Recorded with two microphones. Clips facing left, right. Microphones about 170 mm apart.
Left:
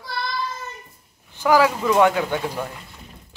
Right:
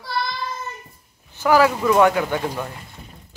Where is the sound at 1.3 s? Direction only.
15° left (ahead or behind).